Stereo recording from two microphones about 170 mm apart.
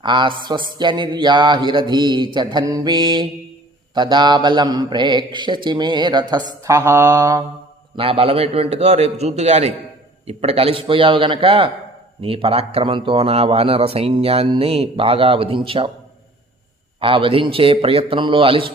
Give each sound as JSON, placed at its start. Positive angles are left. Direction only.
{"t": 0.0, "sound": "mantra", "side_deg": -25}
{"t": 7.9, "sound": "a man's voice", "side_deg": -35}
{"t": 17.0, "sound": "a man's voice", "side_deg": -30}